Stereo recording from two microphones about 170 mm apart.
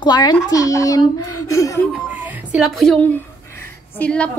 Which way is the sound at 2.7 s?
Centre (ahead or behind).